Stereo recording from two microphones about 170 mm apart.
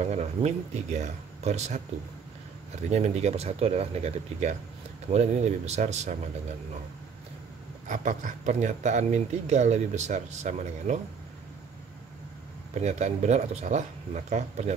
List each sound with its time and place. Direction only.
0.0 s speech: 40° right (ahead or behind)
2.9 s speech: 40° right (ahead or behind)
7.9 s speech: 45° right (ahead or behind)
12.8 s speech: 40° right (ahead or behind)